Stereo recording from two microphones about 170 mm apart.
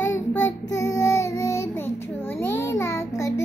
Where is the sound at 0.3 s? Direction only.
15° left (ahead or behind).